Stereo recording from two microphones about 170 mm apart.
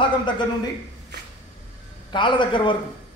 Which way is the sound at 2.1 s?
30° left (ahead or behind).